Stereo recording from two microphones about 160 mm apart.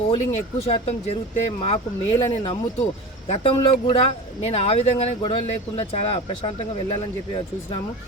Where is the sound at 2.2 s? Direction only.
35° left (ahead or behind).